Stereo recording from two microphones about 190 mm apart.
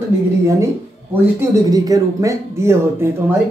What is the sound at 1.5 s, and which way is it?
Speech, 15° right (ahead or behind).